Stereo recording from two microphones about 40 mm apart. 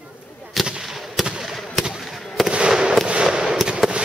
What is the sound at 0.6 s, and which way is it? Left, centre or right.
Gunshot, centre.